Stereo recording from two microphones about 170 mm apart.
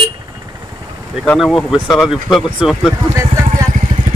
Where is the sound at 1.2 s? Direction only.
Centre (ahead or behind).